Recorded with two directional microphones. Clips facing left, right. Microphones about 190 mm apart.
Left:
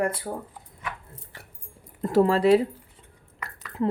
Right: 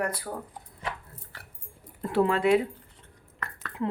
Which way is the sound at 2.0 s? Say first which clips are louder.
Left 4 dB; 40° left (ahead or behind).